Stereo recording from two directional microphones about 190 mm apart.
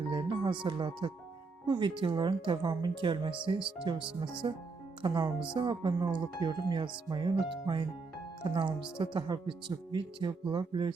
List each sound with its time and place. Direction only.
0.1 s music: 25° right (ahead or behind)
0.6 s speech: 25° right (ahead or behind)